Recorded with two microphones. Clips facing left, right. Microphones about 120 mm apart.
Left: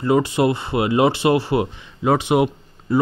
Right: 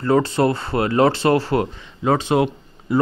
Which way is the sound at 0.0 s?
15° left (ahead or behind).